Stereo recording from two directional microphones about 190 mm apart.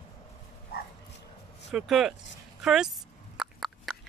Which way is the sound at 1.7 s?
Centre (ahead or behind).